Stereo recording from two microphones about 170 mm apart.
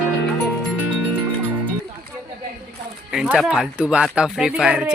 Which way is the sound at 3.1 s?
5° right (ahead or behind).